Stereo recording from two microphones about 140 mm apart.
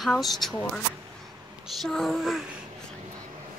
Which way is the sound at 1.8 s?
Centre (ahead or behind).